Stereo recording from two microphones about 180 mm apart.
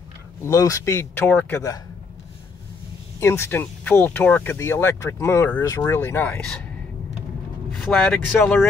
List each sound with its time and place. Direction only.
0.4 s speech: 15° left (ahead or behind)
3.2 s speech: 15° left (ahead or behind)
7.7 s speech: 5° left (ahead or behind)